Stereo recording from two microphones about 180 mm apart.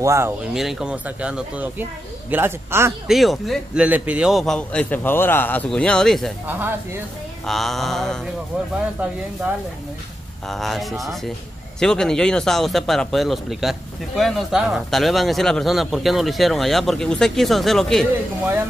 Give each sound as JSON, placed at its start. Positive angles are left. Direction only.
{"t": 0.0, "sound": "speech", "side_deg": -15}
{"t": 0.5, "sound": "speech", "side_deg": 0}
{"t": 3.1, "sound": "a man's voice", "side_deg": 0}
{"t": 6.4, "sound": "speech", "side_deg": -10}
{"t": 7.4, "sound": "a man's voice", "side_deg": 0}
{"t": 10.5, "sound": "a man's voice", "side_deg": 0}